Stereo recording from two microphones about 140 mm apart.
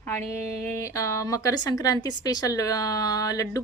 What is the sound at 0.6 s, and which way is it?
Speech, 20° left (ahead or behind).